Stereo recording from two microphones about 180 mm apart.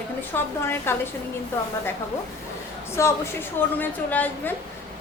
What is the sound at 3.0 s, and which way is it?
A woman's voice, 15° left (ahead or behind).